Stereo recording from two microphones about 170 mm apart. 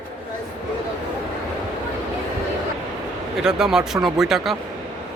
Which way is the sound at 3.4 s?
5° right (ahead or behind).